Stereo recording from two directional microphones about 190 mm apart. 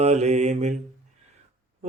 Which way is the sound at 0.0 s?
35° right (ahead or behind).